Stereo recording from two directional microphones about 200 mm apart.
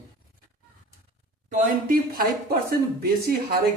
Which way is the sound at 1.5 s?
45° right (ahead or behind).